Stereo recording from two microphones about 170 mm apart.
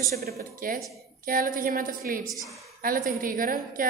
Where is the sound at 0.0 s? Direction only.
65° right (ahead or behind).